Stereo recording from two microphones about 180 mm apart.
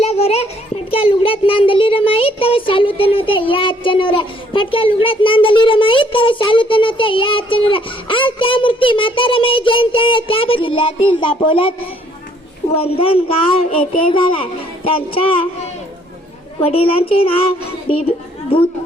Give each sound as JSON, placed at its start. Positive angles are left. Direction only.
{"t": 0.0, "sound": "a sound", "side_deg": 35}
{"t": 0.9, "sound": "child singing", "side_deg": 30}
{"t": 12.8, "sound": "speech", "side_deg": 30}